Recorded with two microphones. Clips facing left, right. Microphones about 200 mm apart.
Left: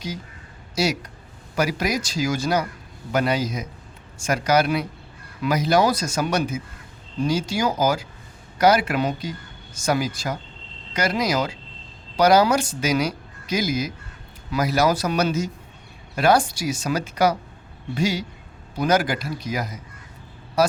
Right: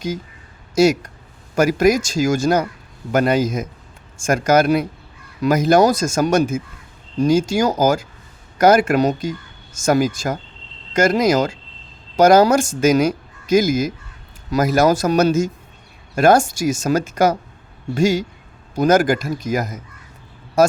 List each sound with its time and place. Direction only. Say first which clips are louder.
0.8 s a man's voice: right 9 dB; 50° right (ahead or behind)